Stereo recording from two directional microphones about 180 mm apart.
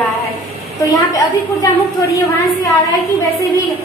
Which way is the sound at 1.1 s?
20° left (ahead or behind).